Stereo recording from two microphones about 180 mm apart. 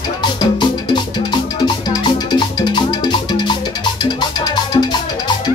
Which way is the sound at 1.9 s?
25° left (ahead or behind).